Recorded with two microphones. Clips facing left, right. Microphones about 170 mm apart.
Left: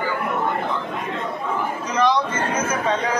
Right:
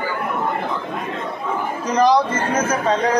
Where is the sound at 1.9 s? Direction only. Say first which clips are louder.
Right 4 dB; 40° right (ahead or behind).